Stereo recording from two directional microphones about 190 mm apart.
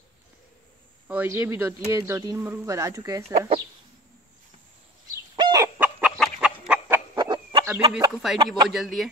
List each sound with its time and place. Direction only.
1.0 s speech: 10° right (ahead or behind)
5.3 s chicken: 20° right (ahead or behind)
5.8 s chicken: 10° right (ahead or behind)
7.2 s a sound: 20° right (ahead or behind)
7.6 s a man's voice: 10° right (ahead or behind)